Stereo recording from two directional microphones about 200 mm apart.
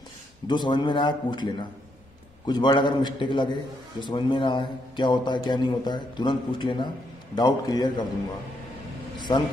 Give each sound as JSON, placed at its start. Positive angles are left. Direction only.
{"t": 0.5, "sound": "a man's voice", "side_deg": 25}